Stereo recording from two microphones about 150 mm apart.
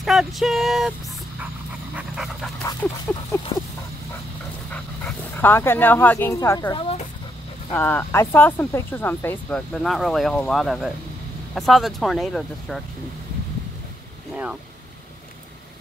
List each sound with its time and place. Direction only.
0.0 s speech: centre (ahead or behind)
2.0 s pant: 5° right (ahead or behind)
2.8 s speech: 10° left (ahead or behind)
4.6 s speech: 10° left (ahead or behind)
6.7 s speech: 40° left (ahead or behind)
7.7 s speech: 10° left (ahead or behind)
14.3 s speech: 10° right (ahead or behind)